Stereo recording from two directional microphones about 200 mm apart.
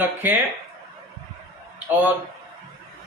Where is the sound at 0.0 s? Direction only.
10° right (ahead or behind).